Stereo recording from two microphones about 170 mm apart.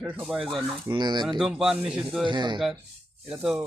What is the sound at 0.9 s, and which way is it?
Speech, 25° right (ahead or behind).